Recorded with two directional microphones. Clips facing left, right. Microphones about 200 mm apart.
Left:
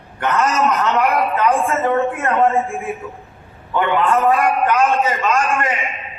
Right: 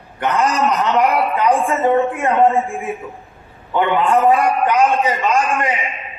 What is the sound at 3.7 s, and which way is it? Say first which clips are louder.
A man's voice: right 1 dB; 15° right (ahead or behind).